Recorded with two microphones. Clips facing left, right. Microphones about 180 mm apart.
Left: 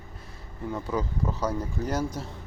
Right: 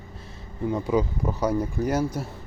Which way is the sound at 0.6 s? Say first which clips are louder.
Right 6 dB; 15° right (ahead or behind).